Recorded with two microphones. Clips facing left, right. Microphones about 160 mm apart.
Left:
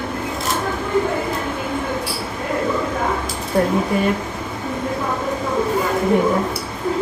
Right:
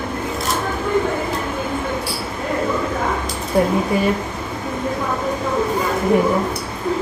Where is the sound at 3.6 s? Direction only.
10° right (ahead or behind).